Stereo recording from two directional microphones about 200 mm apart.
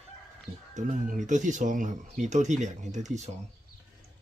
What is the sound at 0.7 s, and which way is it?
Speech, 40° right (ahead or behind).